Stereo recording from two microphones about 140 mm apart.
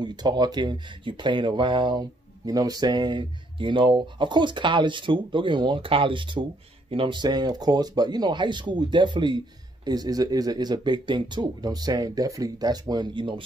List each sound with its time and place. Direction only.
0.0 s speech: 30° right (ahead or behind)